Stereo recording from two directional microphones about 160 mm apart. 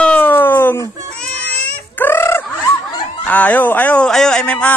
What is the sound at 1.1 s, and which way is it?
Cat, 10° left (ahead or behind).